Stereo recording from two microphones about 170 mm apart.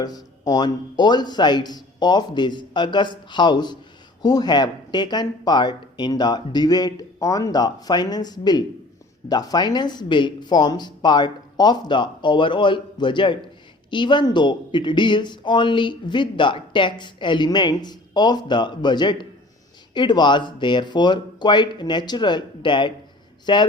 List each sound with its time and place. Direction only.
0.0 s speech: 20° left (ahead or behind)